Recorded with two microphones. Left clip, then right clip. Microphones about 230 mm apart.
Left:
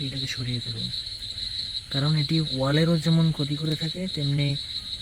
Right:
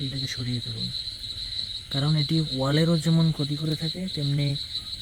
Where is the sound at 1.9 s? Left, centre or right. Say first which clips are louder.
Even; centre.